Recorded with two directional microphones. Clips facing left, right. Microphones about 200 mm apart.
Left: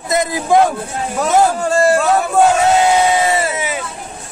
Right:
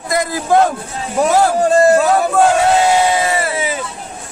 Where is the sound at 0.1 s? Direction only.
15° left (ahead or behind).